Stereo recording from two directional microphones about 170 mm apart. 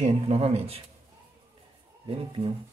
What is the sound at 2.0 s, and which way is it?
Speech, 30° right (ahead or behind).